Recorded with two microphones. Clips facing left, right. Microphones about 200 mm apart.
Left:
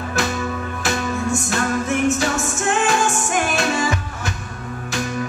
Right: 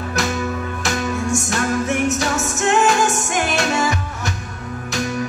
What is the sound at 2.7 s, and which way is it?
Music, 40° right (ahead or behind).